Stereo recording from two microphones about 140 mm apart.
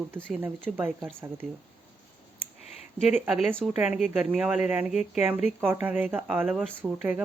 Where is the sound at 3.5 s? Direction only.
Centre (ahead or behind).